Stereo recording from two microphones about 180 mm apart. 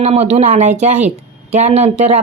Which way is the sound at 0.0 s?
40° right (ahead or behind).